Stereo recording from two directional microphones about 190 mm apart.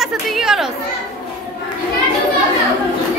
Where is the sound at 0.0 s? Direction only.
Centre (ahead or behind).